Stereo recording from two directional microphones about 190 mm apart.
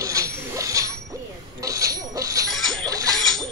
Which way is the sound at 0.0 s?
15° right (ahead or behind).